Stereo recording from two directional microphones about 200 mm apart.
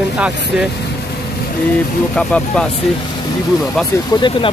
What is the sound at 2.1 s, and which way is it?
Speech, 5° left (ahead or behind).